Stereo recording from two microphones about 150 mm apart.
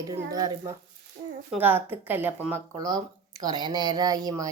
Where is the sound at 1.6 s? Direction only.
15° right (ahead or behind).